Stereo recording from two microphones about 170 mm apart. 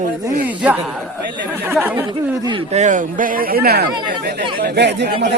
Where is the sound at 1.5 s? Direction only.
15° right (ahead or behind).